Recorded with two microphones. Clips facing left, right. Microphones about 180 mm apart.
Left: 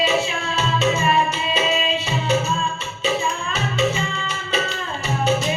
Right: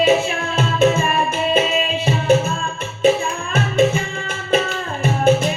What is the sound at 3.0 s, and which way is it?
Music, 55° right (ahead or behind).